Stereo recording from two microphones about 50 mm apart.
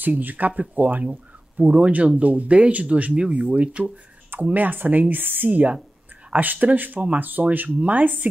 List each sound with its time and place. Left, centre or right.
0.0 s speech: right